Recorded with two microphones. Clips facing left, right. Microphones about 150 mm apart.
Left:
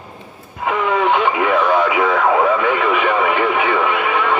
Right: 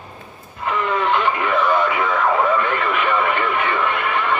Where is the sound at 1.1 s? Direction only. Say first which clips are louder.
Left 3 dB; 80° left.